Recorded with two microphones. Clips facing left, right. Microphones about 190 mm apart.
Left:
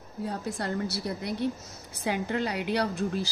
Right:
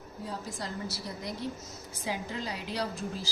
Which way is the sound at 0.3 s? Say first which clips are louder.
Left 6 dB; 65° left (ahead or behind).